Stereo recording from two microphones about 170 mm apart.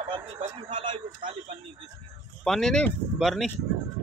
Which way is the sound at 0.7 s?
30° right (ahead or behind).